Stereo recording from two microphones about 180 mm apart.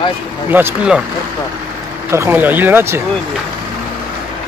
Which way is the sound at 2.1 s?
10° right (ahead or behind).